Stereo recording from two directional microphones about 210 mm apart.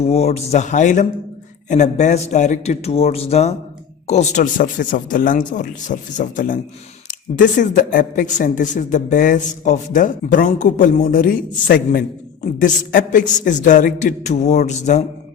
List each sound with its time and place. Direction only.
0.1 s a man's voice: 30° left (ahead or behind)